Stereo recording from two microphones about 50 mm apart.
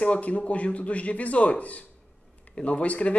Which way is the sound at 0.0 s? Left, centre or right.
Left.